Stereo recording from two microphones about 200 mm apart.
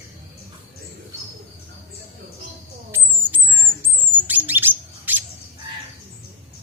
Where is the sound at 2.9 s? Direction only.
10° right (ahead or behind).